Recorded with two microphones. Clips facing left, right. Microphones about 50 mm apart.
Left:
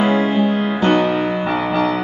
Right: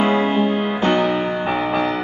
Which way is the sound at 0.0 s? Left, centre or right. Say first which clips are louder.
Left 1 dB; centre.